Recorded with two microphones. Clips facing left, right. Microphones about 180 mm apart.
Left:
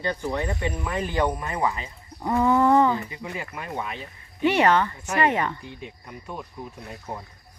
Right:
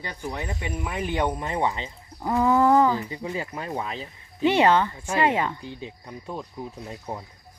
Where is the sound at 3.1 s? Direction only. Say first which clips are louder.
Right 4 dB; 30° right (ahead or behind).